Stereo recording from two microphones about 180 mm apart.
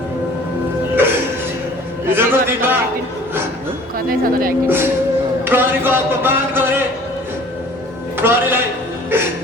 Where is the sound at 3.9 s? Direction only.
55° right (ahead or behind).